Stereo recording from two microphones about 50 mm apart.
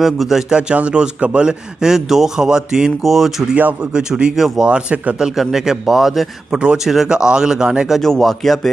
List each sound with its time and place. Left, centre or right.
0.0 s a man's voice: centre
0.6 s a man's voice: right; by 3.4 s centre
3.9 s a man's voice: centre
5.2 s a man's voice: centre
7.1 s a man's voice: centre
8.0 s a man's voice: centre